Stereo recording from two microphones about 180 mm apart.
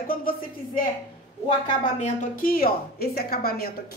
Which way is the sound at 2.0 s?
45° left (ahead or behind).